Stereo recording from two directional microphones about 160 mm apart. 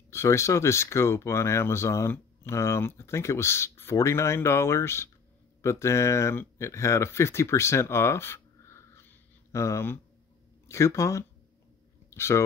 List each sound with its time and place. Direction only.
0.1 s speech: 15° left (ahead or behind)